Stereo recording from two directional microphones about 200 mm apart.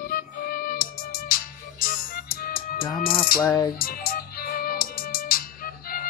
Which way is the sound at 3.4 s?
15° left (ahead or behind).